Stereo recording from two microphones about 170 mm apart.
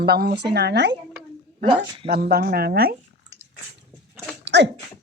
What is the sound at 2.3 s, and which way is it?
Speech, 65° right (ahead or behind).